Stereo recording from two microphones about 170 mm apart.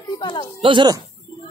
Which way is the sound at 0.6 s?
30° right (ahead or behind).